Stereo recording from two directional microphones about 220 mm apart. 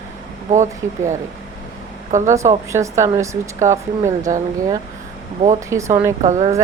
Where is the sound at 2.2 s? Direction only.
15° right (ahead or behind).